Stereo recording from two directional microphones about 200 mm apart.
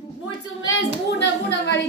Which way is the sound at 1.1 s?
60° left (ahead or behind).